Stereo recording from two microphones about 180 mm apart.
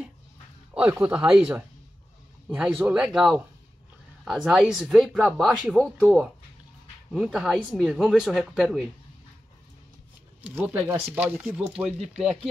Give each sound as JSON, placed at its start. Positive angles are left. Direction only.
{"t": 0.7, "sound": "speech", "side_deg": -10}
{"t": 10.4, "sound": "speech", "side_deg": -10}
{"t": 11.1, "sound": "speech", "side_deg": 0}